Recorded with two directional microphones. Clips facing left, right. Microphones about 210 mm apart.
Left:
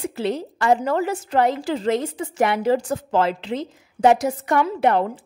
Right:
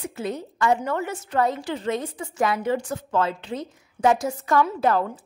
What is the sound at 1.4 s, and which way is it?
Speech, 90° left.